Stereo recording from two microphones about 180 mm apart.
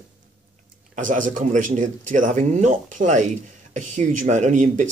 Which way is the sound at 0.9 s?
45° right (ahead or behind).